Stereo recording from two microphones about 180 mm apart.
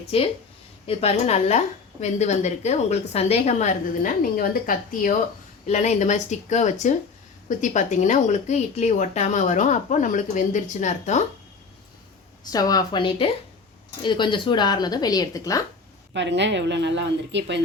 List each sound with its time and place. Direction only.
0.1 s a woman's voice: 30° left (ahead or behind); by 5.1 s 50° left (ahead or behind)
5.6 s a woman's voice: 40° left (ahead or behind)
12.5 s speech: 20° left (ahead or behind)
16.1 s speech: 80° right